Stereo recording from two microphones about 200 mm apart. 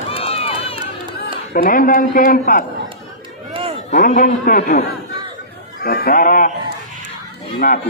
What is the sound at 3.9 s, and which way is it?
Speech, 40° left (ahead or behind).